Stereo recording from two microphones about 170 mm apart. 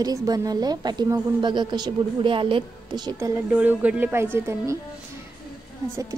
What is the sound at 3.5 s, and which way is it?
A woman's voice, 10° right (ahead or behind).